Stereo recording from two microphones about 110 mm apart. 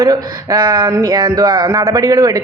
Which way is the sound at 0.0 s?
40° right (ahead or behind).